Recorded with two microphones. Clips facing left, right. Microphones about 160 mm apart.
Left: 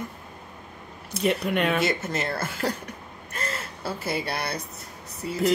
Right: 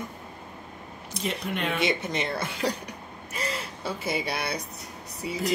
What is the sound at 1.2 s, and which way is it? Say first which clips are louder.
Speech: left 7 dB; 65° left (ahead or behind).